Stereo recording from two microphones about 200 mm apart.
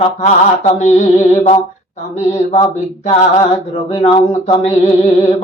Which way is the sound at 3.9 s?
35° left (ahead or behind).